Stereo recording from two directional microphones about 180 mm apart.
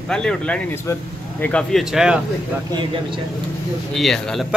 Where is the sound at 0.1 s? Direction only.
5° left (ahead or behind).